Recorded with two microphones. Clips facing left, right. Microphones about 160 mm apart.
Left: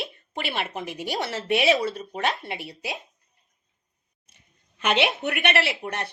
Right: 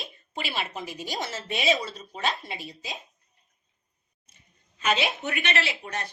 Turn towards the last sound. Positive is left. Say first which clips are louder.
# left 4 dB
turn(degrees=65)  # may be behind; listen again after turning